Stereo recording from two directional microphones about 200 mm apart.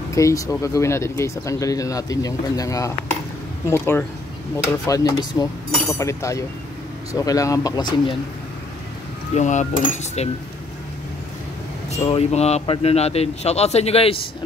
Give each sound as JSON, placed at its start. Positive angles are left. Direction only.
{"t": 0.1, "sound": "speech", "side_deg": 15}
{"t": 9.3, "sound": "a man's voice", "side_deg": 35}
{"t": 11.9, "sound": "a man's voice", "side_deg": 30}